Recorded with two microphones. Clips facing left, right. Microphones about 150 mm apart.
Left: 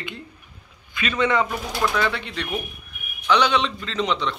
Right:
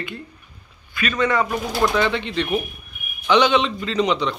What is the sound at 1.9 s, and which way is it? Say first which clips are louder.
Speech: right 4 dB; 5° left (ahead or behind).